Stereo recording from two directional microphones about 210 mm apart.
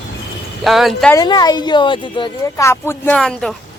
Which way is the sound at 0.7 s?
Centre (ahead or behind).